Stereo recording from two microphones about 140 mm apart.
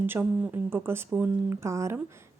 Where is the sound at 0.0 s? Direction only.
15° right (ahead or behind).